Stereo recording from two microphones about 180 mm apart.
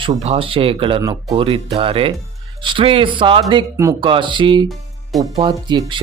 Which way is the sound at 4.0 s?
30° right (ahead or behind).